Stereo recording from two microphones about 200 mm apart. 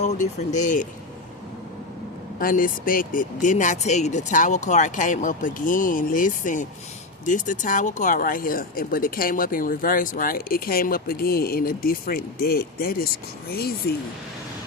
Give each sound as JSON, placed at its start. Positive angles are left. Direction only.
{"t": 0.0, "sound": "speech", "side_deg": 35}
{"t": 2.4, "sound": "speech", "side_deg": 45}